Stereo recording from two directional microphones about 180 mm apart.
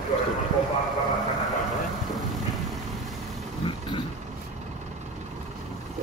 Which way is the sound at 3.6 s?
25° left (ahead or behind).